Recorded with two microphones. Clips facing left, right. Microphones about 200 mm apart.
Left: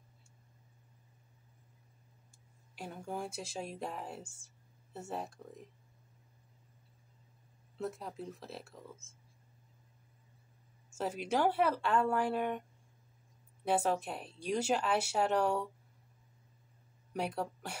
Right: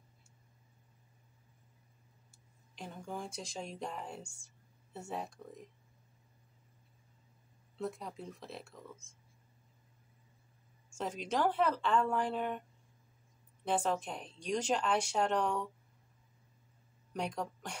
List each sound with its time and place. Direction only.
2.7 s speech: 10° left (ahead or behind)
7.8 s speech: centre (ahead or behind)
10.9 s speech: 5° left (ahead or behind)
13.7 s speech: 10° left (ahead or behind)
17.1 s speech: 5° left (ahead or behind)